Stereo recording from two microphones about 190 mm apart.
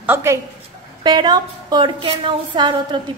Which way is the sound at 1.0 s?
20° right (ahead or behind).